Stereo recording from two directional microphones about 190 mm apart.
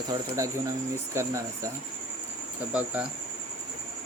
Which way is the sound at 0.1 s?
15° right (ahead or behind).